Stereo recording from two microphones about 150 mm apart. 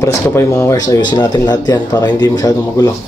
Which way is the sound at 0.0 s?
20° left (ahead or behind).